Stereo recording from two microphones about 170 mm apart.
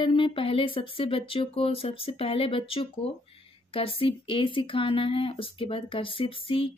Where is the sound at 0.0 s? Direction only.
30° left (ahead or behind).